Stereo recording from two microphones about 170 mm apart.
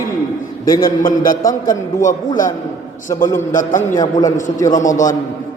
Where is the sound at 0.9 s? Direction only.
55° left (ahead or behind).